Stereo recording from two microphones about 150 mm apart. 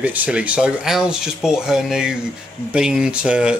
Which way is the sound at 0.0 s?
10° right (ahead or behind).